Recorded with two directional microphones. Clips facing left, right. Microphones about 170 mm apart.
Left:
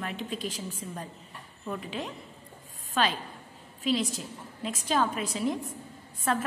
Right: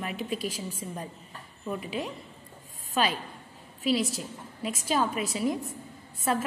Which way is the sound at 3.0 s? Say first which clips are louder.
Even; 5° right (ahead or behind).